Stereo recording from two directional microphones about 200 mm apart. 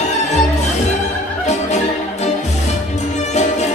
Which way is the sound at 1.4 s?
35° left (ahead or behind).